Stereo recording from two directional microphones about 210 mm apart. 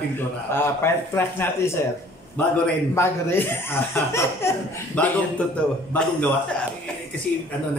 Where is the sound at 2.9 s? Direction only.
10° left (ahead or behind).